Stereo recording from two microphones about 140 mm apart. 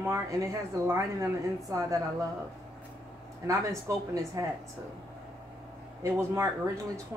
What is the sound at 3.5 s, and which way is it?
Speech, 20° right (ahead or behind).